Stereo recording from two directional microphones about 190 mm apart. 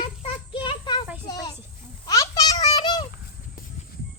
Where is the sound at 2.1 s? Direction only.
20° left (ahead or behind).